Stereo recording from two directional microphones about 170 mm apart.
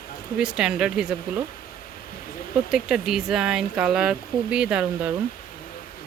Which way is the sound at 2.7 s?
5° right (ahead or behind).